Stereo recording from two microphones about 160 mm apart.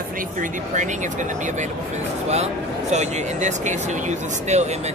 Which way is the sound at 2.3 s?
45° right (ahead or behind).